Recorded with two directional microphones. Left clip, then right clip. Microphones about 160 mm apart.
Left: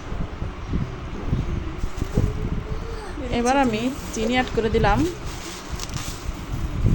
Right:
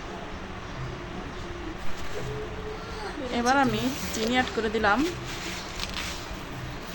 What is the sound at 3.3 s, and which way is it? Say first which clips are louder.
Speech: left 3 dB; 20° left (ahead or behind).